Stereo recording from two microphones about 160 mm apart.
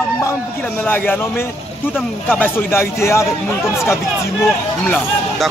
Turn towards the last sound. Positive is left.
turn(degrees=5)  # may be behind; listen again after turning